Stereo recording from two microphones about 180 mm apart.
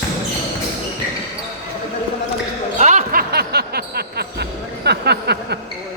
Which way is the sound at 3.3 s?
60° right (ahead or behind).